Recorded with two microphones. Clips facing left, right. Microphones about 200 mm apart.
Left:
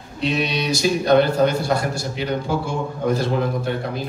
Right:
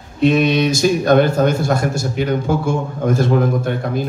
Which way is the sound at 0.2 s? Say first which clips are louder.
Right 9 dB; 50° right (ahead or behind).